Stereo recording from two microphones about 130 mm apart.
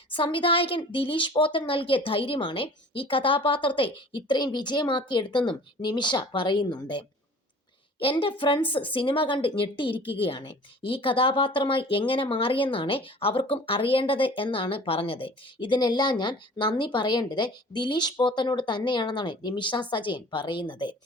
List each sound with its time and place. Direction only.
0.1 s a woman's voice: 40° left (ahead or behind)
7.9 s speech: 45° left (ahead or behind)